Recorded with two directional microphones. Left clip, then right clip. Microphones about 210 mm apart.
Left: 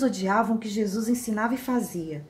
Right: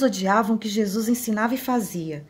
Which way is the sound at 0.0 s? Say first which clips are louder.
Right 4 dB; 45° right (ahead or behind).